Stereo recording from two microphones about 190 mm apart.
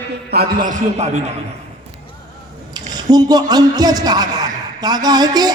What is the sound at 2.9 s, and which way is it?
A man's voice, 20° right (ahead or behind).